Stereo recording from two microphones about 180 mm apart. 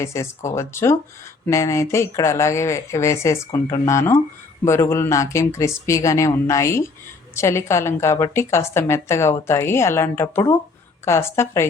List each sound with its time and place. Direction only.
0.0 s a woman's voice: 15° left (ahead or behind)